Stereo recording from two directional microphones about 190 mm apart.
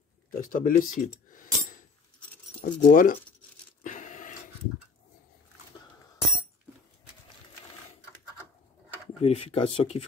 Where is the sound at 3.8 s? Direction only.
40° left (ahead or behind).